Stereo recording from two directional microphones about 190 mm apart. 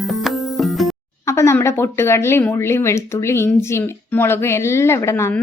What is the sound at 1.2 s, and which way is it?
Speech, 15° left (ahead or behind).